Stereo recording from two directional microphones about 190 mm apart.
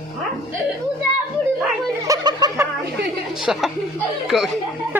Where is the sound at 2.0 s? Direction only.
20° right (ahead or behind).